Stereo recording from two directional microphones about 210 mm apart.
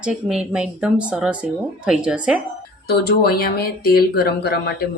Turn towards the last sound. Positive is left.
turn(degrees=45)  # may be behind; listen again after turning